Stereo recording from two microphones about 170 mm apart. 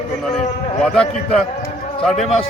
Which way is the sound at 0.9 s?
5° left (ahead or behind).